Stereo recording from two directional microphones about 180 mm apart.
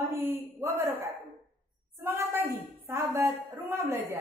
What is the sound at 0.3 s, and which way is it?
Speech, 15° right (ahead or behind).